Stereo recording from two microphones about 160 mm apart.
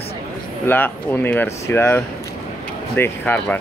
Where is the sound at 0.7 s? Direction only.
10° left (ahead or behind).